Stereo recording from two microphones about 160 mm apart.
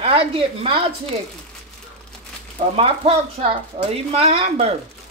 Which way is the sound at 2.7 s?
35° right (ahead or behind).